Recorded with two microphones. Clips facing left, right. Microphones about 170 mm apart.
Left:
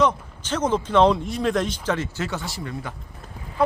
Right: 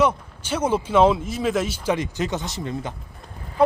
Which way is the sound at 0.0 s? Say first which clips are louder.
Right 1 dB; 10° right (ahead or behind).